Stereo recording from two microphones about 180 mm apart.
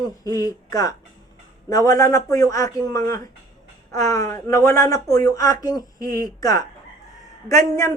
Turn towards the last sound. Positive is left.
turn(degrees=15)  # may be behind; listen again after turning